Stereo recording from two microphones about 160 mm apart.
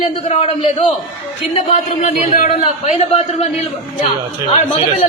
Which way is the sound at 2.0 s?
50° left (ahead or behind).